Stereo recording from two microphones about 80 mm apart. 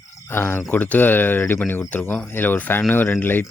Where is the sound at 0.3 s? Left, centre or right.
Left.